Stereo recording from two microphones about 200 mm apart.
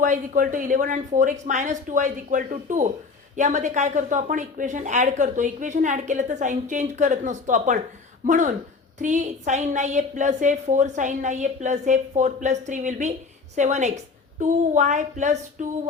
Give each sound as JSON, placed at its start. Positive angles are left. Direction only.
{"t": 0.0, "sound": "speech", "side_deg": -40}